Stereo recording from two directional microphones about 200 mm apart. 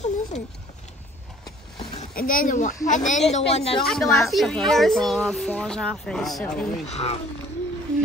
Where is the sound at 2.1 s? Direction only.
45° left (ahead or behind).